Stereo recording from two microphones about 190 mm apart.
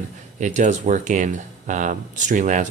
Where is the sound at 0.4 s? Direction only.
40° right (ahead or behind).